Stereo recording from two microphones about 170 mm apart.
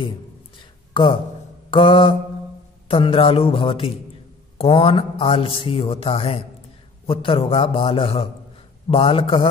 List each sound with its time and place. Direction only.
1.7 s mantra: 30° left (ahead or behind)
2.9 s a man's voice: 30° left (ahead or behind)